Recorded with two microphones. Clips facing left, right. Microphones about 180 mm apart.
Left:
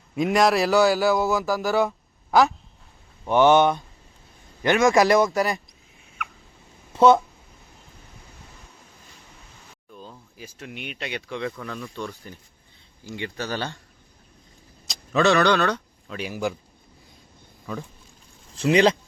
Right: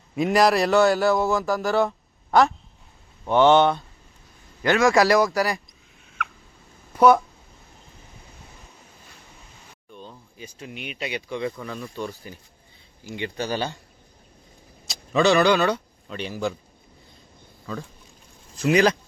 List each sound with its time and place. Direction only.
0.2 s a man's voice: centre (ahead or behind)
3.2 s speech: 10° left (ahead or behind)
6.9 s speech: 25° left (ahead or behind)
9.9 s a sound: 5° left (ahead or behind)
10.8 s a man's voice: 5° right (ahead or behind)
14.8 s vehicle: centre (ahead or behind)
16.3 s speech: 15° left (ahead or behind)
18.5 s speech: 30° left (ahead or behind)